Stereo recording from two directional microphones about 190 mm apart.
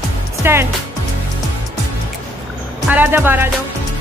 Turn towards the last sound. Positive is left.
turn(degrees=-10)  # may be behind; listen again after turning